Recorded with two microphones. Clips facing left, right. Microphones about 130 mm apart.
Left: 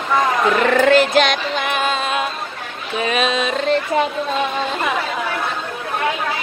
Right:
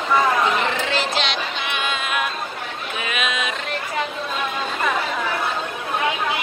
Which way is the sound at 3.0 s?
35° left (ahead or behind).